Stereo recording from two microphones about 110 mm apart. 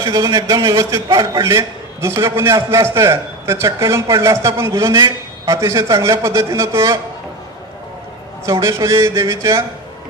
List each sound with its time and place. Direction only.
0.0 s a man's voice: 35° right (ahead or behind)
8.5 s a man's voice: 30° right (ahead or behind)